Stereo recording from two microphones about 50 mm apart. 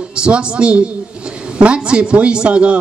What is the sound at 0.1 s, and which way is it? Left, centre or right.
A man's voice, right.